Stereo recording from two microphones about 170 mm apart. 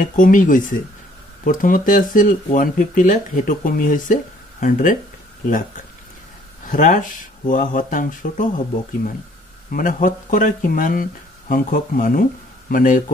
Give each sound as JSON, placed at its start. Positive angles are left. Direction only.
{"t": 0.0, "sound": "speech", "side_deg": 50}
{"t": 6.6, "sound": "speech", "side_deg": 50}